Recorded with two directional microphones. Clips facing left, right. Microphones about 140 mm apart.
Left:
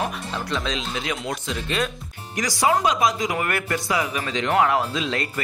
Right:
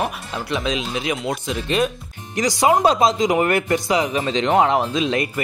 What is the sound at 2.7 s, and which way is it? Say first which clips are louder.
Speech: right 5 dB; 35° right (ahead or behind).